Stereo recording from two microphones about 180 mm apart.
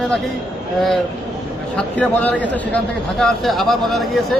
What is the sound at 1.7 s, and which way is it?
A man's voice, 5° left (ahead or behind).